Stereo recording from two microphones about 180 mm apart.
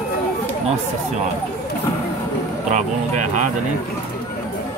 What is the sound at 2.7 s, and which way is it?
Speech, 45° right (ahead or behind).